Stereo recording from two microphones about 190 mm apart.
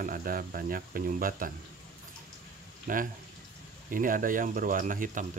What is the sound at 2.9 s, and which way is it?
Speech, 45° right (ahead or behind).